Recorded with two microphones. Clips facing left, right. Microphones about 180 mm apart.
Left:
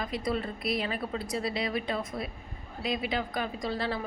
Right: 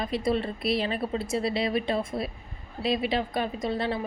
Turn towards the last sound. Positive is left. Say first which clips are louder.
# right 3 dB
turn(degrees=-20)  # may be behind; listen again after turning